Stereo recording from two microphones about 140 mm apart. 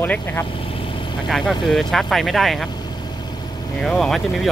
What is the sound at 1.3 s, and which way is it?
Speech, centre (ahead or behind).